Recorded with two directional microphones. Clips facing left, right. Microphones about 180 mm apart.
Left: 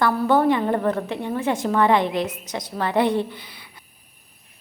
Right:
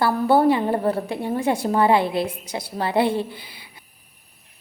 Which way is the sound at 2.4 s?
10° right (ahead or behind).